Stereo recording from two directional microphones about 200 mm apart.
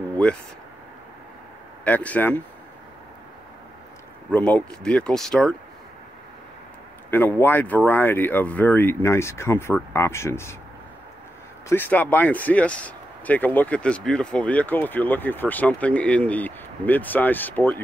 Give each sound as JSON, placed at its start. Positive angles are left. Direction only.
{"t": 1.9, "sound": "speech", "side_deg": 10}
{"t": 4.3, "sound": "speech", "side_deg": 5}
{"t": 7.1, "sound": "speech", "side_deg": 10}
{"t": 11.7, "sound": "speech", "side_deg": 10}